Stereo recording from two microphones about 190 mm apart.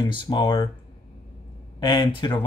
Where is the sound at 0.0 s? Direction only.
25° left (ahead or behind).